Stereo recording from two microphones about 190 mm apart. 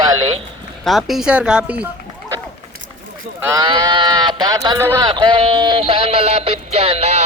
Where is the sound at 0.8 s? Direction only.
Centre (ahead or behind).